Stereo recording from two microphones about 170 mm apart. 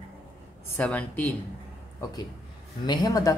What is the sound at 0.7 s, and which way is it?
Speech, 10° left (ahead or behind).